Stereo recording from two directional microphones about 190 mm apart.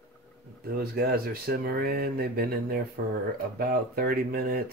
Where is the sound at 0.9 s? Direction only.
55° right (ahead or behind).